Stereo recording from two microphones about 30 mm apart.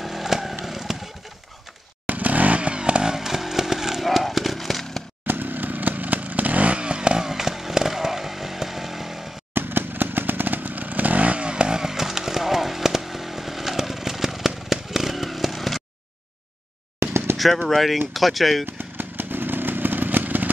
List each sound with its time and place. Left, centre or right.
0.0 s vehicle: centre
2.0 s vehicle: right
3.2 s vehicle: centre
4.0 s run: centre
5.2 s vehicle: right
6.8 s vehicle: right
7.2 s chainsaw: centre
9.9 s chainsaw: right
11.7 s chainsaw: centre
14.7 s vehicle: centre
15.2 s a sound: centre
17.6 s speech: centre
19.5 s motorcycle: right